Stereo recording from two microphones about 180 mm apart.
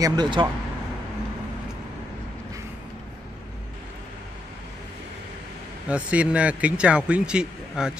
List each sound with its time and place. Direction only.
0.0 s speech: 25° right (ahead or behind)
5.9 s a man's voice: 5° right (ahead or behind)